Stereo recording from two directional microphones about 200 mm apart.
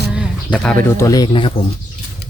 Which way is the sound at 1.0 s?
15° left (ahead or behind).